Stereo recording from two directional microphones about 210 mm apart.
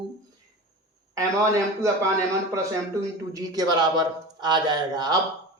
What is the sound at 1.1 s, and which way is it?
Speech, 15° right (ahead or behind).